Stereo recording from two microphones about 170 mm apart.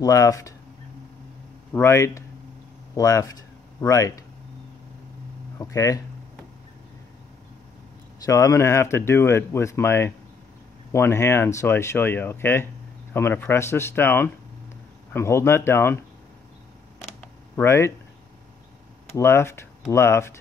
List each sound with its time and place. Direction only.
0.0 s speech: 20° left (ahead or behind)
1.7 s speech: 15° left (ahead or behind)
5.6 s speech: 20° left (ahead or behind)
8.2 s speech: 20° left (ahead or behind)
17.6 s speech: 15° left (ahead or behind)
19.1 s speech: 15° left (ahead or behind)